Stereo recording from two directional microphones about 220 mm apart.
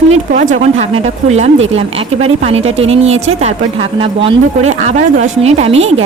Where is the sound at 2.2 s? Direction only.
30° right (ahead or behind).